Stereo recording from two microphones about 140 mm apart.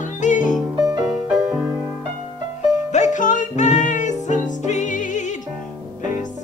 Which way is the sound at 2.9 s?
60° left (ahead or behind).